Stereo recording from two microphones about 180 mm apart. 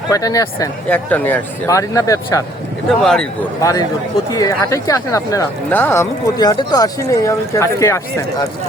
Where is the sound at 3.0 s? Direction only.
Centre (ahead or behind).